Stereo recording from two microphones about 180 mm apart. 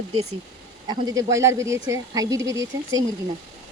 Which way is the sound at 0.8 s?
20° right (ahead or behind).